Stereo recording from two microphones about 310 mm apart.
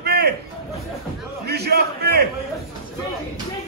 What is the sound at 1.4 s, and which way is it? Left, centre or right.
Speech, right.